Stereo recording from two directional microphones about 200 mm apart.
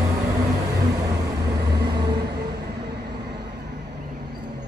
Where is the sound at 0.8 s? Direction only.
20° right (ahead or behind).